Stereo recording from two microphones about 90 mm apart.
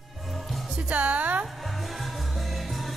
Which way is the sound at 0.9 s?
15° right (ahead or behind).